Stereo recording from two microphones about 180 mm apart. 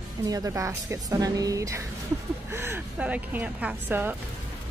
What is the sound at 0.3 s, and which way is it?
Speech, 20° right (ahead or behind).